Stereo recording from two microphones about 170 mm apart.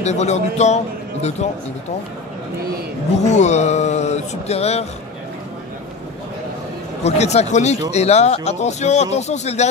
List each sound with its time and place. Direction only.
0.0 s speech: 40° left (ahead or behind)
3.3 s a sound: 45° left (ahead or behind)
7.0 s speech: 40° left (ahead or behind)